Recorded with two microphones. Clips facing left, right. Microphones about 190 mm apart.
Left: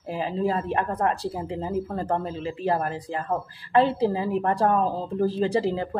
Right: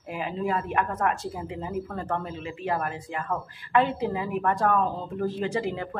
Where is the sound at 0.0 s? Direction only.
30° left (ahead or behind).